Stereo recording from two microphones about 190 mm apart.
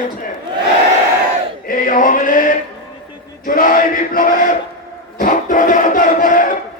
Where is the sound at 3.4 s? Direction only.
45° left (ahead or behind).